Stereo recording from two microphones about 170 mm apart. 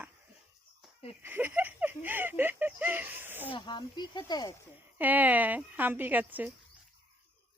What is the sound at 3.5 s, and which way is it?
Speech, 25° left (ahead or behind).